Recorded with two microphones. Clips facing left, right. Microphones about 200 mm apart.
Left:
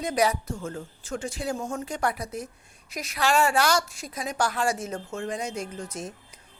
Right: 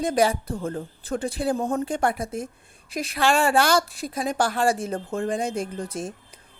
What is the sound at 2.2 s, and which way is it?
Speech, 50° right (ahead or behind).